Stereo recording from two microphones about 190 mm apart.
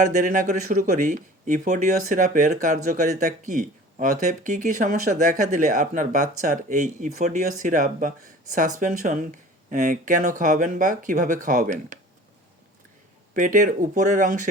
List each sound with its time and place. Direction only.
0.0 s speech: 40° right (ahead or behind)
13.3 s speech: 45° right (ahead or behind)